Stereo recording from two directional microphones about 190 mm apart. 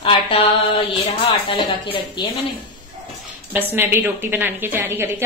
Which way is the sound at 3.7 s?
10° right (ahead or behind).